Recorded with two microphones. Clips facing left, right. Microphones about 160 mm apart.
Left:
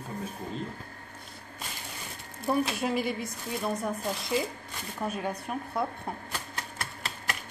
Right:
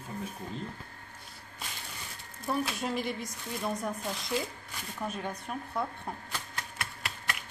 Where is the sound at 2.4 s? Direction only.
5° left (ahead or behind).